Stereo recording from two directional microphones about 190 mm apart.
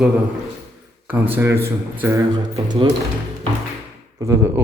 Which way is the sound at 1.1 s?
10° right (ahead or behind).